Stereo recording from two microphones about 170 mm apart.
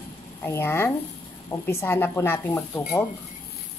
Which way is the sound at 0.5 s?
15° left (ahead or behind).